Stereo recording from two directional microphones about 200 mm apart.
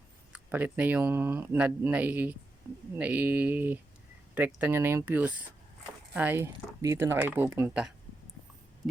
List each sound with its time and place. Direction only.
0.3 s speech: 5° right (ahead or behind)